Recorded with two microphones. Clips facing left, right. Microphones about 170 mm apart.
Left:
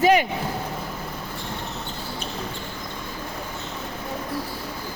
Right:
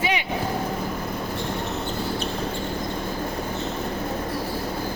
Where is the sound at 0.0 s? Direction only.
45° left (ahead or behind).